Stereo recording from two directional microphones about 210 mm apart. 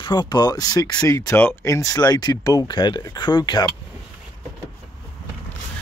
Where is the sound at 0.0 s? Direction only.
20° left (ahead or behind).